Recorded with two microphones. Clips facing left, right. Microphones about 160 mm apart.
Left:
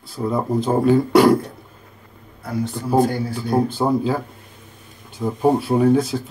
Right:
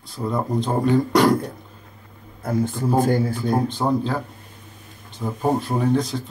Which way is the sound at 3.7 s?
5° left (ahead or behind).